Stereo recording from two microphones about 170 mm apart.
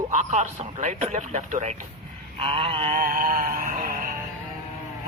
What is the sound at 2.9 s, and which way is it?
Speech, 55° right (ahead or behind).